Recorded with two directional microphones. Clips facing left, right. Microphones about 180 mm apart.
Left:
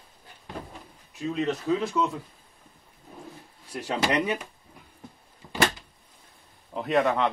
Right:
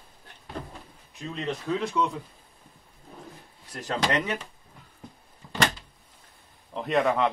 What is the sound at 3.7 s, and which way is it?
Speech, 10° left (ahead or behind).